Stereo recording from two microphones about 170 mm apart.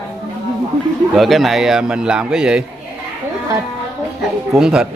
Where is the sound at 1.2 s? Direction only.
Centre (ahead or behind).